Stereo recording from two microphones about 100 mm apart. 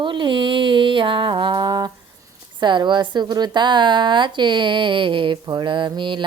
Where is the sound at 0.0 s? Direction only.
55° right (ahead or behind).